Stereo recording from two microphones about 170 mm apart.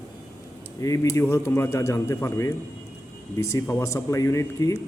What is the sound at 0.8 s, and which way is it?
A man's voice, 20° left (ahead or behind).